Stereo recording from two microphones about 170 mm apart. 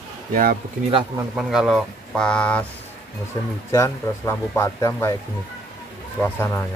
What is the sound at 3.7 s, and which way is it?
Speech, 15° left (ahead or behind).